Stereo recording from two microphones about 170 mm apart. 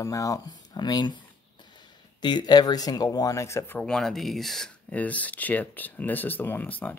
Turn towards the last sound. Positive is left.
turn(degrees=10)  # may be behind; listen again after turning